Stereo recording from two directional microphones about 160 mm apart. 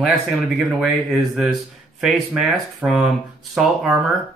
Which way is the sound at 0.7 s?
Centre (ahead or behind).